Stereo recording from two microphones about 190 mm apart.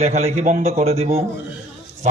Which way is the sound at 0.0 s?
35° right (ahead or behind).